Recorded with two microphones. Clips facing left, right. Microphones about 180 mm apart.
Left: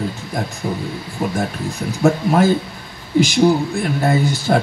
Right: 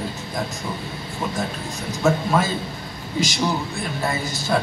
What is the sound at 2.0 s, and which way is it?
Speech, 60° left (ahead or behind).